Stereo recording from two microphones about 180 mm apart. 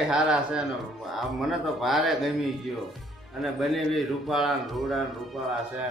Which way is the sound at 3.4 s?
Centre (ahead or behind).